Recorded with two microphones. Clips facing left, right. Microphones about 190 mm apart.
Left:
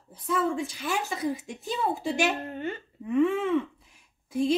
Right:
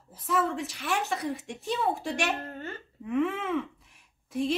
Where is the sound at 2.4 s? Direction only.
15° left (ahead or behind).